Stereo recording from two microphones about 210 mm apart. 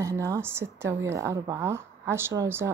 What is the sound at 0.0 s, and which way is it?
A woman's voice, 15° right (ahead or behind).